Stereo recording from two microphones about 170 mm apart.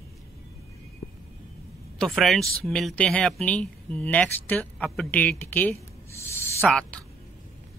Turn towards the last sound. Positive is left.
turn(degrees=5)  # may be behind; listen again after turning